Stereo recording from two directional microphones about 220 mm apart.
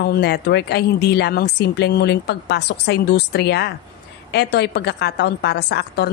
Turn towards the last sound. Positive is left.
turn(degrees=50)  # may be behind; listen again after turning